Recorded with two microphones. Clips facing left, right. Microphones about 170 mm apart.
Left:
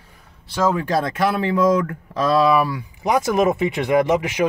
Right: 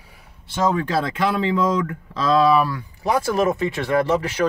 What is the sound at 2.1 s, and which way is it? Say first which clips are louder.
Speech: even; 10° left (ahead or behind).